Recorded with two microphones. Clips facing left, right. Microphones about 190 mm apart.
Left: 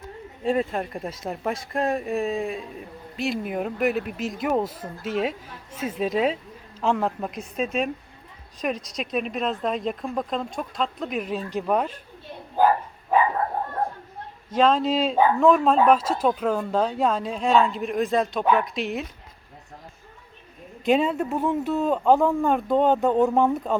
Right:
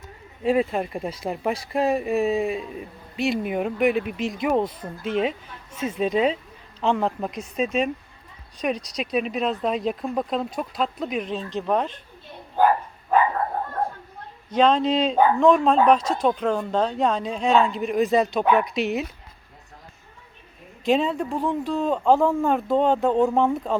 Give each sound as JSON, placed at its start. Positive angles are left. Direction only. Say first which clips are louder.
{"t": 0.4, "sound": "speech", "louder": "right 3 dB", "side_deg": -5}
{"t": 14.5, "sound": "speech", "louder": "right 1 dB", "side_deg": 5}
{"t": 20.8, "sound": "speech", "louder": "even", "side_deg": 0}